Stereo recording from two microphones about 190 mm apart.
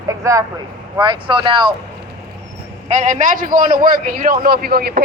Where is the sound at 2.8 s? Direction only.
40° right (ahead or behind).